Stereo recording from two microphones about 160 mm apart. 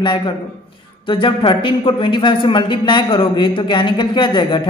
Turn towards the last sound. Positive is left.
turn(degrees=30)  # may be behind; listen again after turning